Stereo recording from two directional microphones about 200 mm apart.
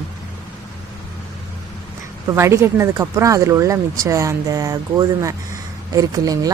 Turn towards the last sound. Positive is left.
turn(degrees=-20)  # may be behind; listen again after turning